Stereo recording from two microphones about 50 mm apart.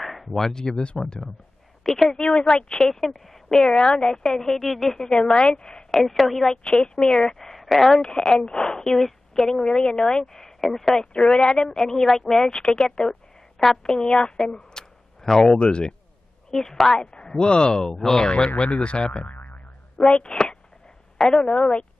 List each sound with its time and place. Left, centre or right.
0.0 s speech: centre
1.8 s speech: centre
2.1 s speech: centre
3.7 s speech: centre
5.0 s speech: centre
5.9 s a woman's voice: centre
6.5 s a woman's voice: centre
11.3 s speech: centre
16.4 s speech: centre
18.6 s speech: left
19.3 s boing: left
20.2 s speech: centre